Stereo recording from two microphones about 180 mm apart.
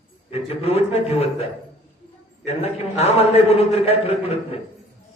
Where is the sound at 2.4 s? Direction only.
35° left (ahead or behind).